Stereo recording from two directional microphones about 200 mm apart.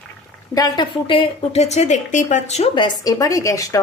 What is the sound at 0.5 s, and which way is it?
Speech, 20° left (ahead or behind).